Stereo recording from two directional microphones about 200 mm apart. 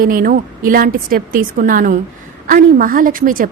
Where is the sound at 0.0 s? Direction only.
45° right (ahead or behind).